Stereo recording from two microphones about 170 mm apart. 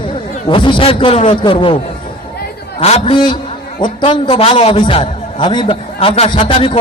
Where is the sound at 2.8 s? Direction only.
35° left (ahead or behind).